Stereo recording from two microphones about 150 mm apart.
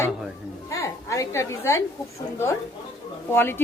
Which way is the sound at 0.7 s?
20° left (ahead or behind).